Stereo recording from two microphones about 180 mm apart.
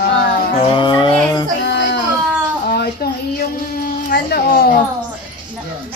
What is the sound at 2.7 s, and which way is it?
A child's voice, 60° left (ahead or behind).